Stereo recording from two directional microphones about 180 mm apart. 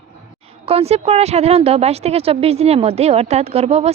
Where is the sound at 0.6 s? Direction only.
35° right (ahead or behind).